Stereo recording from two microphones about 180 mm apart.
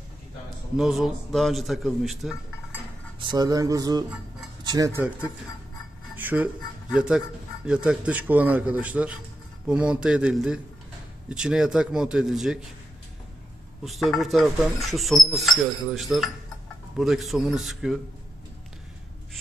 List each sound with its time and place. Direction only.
0.7 s speech: centre (ahead or behind)
3.2 s speech: 25° right (ahead or behind); by 12.6 s centre (ahead or behind)
13.8 s speech: centre (ahead or behind)